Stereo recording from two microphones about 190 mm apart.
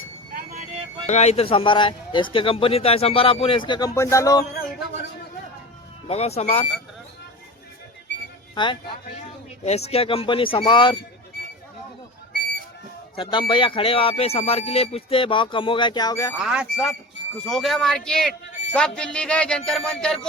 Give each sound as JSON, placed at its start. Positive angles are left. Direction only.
{"t": 1.0, "sound": "speech", "side_deg": 35}
{"t": 6.1, "sound": "speech", "side_deg": 35}
{"t": 8.5, "sound": "speech", "side_deg": 25}
{"t": 13.1, "sound": "speech", "side_deg": 25}
{"t": 16.4, "sound": "a man's voice", "side_deg": -5}